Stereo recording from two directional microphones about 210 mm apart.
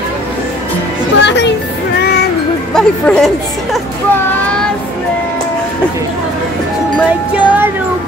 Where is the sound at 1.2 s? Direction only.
55° left (ahead or behind).